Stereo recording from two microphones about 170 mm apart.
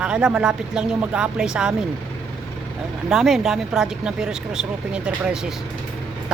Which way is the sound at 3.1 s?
Centre (ahead or behind).